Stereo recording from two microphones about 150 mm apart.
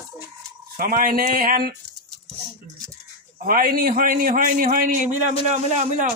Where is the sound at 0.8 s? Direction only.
70° right (ahead or behind).